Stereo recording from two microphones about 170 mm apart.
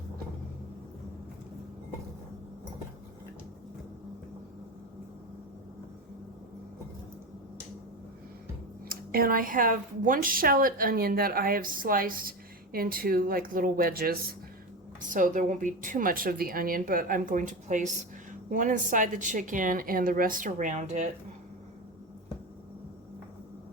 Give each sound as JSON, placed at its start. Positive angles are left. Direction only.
{"t": 8.9, "sound": "a woman's voice", "side_deg": -60}